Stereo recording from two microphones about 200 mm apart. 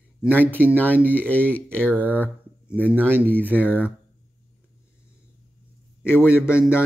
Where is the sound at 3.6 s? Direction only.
10° left (ahead or behind).